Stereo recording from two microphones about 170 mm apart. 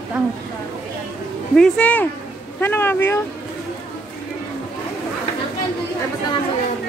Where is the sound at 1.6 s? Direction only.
5° left (ahead or behind).